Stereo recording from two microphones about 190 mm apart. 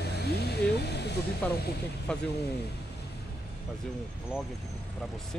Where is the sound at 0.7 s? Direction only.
60° left (ahead or behind).